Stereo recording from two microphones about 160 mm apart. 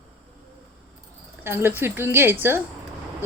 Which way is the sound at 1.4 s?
15° right (ahead or behind).